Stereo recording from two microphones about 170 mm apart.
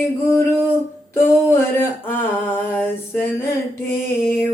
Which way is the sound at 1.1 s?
15° left (ahead or behind).